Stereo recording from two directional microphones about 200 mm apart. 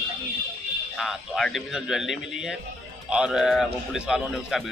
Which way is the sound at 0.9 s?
Centre (ahead or behind).